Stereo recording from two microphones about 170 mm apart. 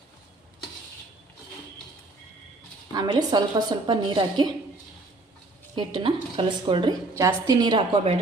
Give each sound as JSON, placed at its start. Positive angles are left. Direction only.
{"t": 2.9, "sound": "a woman's voice", "side_deg": -25}
{"t": 5.7, "sound": "a woman's voice", "side_deg": -30}
{"t": 7.2, "sound": "a woman's voice", "side_deg": -20}